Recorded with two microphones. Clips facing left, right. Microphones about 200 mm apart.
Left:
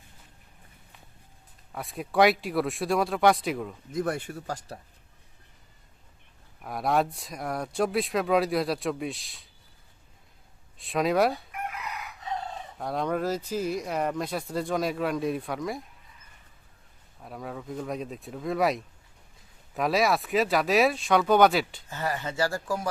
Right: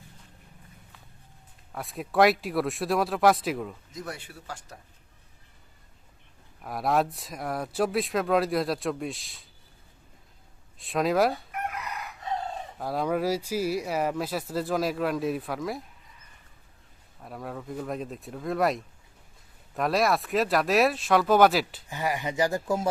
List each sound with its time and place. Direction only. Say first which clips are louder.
1.7 s speech: even; centre (ahead or behind)
3.9 s speech: left 14 dB; 50° left (ahead or behind)
6.6 s speech: even; centre (ahead or behind)
10.8 s speech: even; centre (ahead or behind)
12.8 s speech: right 1 dB; 5° right (ahead or behind)
17.2 s speech: even; centre (ahead or behind)
21.8 s speech: right 2 dB; 15° right (ahead or behind)